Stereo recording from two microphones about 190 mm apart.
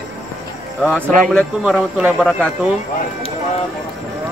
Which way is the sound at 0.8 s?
5° left (ahead or behind).